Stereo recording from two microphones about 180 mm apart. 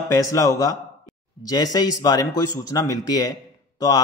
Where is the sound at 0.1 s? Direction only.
20° left (ahead or behind).